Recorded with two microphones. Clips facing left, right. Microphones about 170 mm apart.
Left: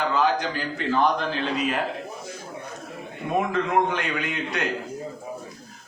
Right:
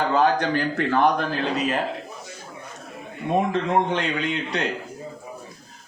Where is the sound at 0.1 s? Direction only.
50° right (ahead or behind).